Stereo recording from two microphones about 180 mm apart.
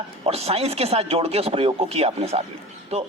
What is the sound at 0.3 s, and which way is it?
A man's voice, 35° right (ahead or behind).